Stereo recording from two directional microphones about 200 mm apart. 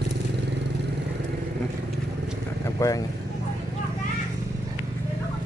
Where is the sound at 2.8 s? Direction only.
15° left (ahead or behind).